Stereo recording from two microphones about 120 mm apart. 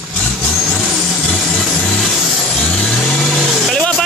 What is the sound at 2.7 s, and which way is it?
Vehicle, 5° left (ahead or behind).